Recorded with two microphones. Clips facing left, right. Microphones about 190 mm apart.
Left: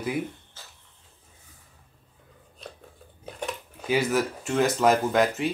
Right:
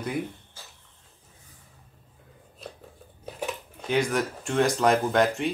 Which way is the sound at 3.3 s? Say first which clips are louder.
Right 1 dB; centre (ahead or behind).